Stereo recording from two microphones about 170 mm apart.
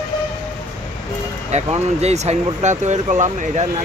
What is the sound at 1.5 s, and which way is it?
Speech, 40° right (ahead or behind).